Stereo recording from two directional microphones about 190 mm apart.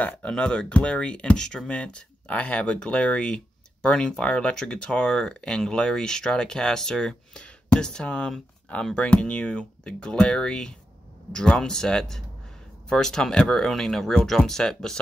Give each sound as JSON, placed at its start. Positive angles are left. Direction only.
{"t": 0.0, "sound": "speech", "side_deg": 5}